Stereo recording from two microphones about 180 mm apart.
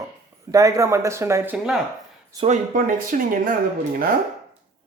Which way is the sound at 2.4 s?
50° right (ahead or behind).